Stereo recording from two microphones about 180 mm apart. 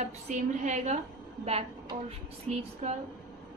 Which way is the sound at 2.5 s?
5° left (ahead or behind).